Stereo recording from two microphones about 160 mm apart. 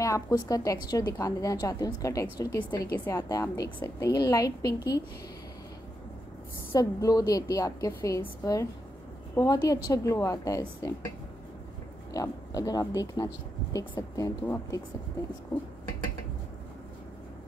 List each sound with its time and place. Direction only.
0.0 s a woman's voice: 20° left (ahead or behind)
6.7 s a woman's voice: 20° left (ahead or behind)
12.1 s a woman's voice: 20° left (ahead or behind)